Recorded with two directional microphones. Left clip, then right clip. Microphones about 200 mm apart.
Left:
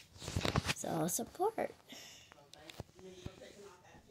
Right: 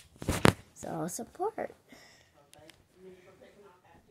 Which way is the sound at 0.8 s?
10° left (ahead or behind).